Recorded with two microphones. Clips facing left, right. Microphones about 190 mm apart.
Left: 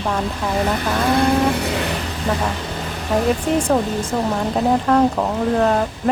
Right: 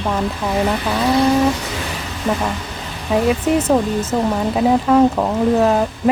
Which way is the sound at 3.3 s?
5° right (ahead or behind).